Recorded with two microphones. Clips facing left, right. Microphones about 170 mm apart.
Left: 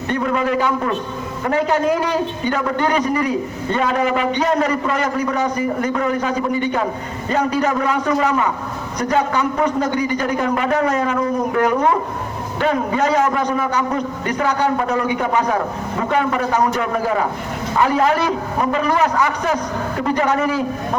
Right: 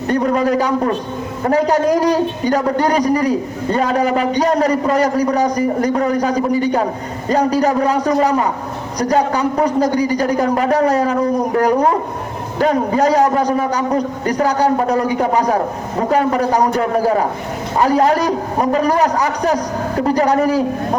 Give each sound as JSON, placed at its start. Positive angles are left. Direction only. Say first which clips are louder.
{"t": 0.1, "sound": "a man's voice", "louder": "right 4 dB", "side_deg": -40}